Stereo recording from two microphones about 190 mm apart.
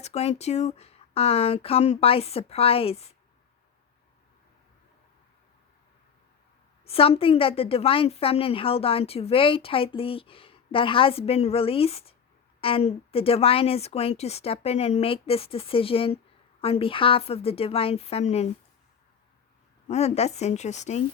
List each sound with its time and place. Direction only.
0.0 s a woman's voice: 35° left (ahead or behind)
6.8 s a woman's voice: 30° left (ahead or behind)
19.9 s a woman's voice: 35° left (ahead or behind)